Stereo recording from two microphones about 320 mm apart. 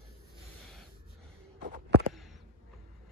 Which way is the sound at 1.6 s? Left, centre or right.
Right.